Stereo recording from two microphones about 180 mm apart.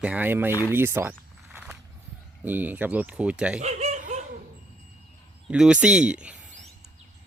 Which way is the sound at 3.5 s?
40° right (ahead or behind).